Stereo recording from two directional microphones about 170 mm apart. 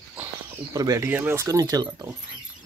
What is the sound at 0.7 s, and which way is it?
Speech, 20° right (ahead or behind).